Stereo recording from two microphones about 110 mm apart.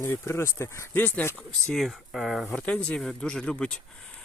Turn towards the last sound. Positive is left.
turn(degrees=10)  # may be behind; listen again after turning